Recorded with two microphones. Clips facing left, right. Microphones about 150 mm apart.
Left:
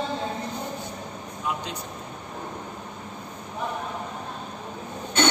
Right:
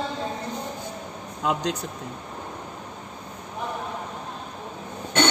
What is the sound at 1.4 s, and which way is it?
Speech, 90° right.